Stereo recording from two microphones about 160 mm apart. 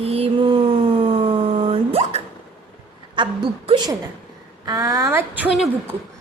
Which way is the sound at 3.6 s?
30° right (ahead or behind).